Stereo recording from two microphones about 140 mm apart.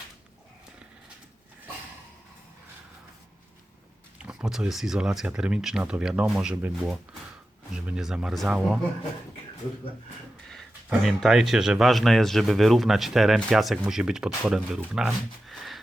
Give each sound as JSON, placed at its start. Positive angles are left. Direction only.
{"t": 4.3, "sound": "speech", "side_deg": -5}
{"t": 10.8, "sound": "speech", "side_deg": 0}